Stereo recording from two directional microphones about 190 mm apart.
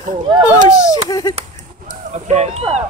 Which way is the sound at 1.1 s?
15° left (ahead or behind).